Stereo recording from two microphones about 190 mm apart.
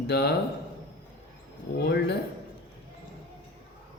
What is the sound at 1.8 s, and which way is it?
Speech, 60° left (ahead or behind).